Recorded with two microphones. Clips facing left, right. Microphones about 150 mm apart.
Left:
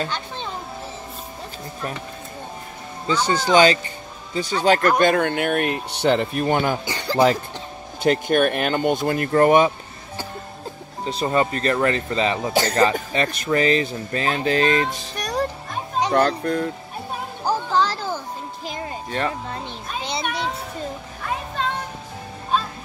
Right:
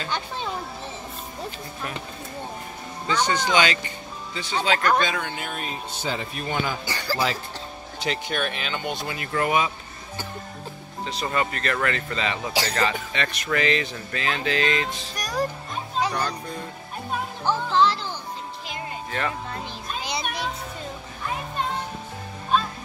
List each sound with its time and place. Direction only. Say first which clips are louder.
3.1 s speech: left 4 dB; 30° left (ahead or behind)
5.0 s speech: left 10 dB; 55° left (ahead or behind)
6.9 s speech: left 2 dB; 20° left (ahead or behind)
8.0 s speech: left 10 dB; 50° left (ahead or behind)
11.1 s speech: left 6 dB; 30° left (ahead or behind)
16.1 s speech: left 9 dB; 60° left (ahead or behind)
17.5 s music: even; 40° left (ahead or behind)
18.7 s music: left 4 dB; 35° left (ahead or behind)